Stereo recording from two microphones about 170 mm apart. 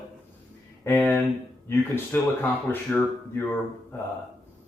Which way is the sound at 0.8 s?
10° left (ahead or behind).